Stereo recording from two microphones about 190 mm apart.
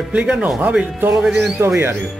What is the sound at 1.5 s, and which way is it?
Speech, 15° right (ahead or behind).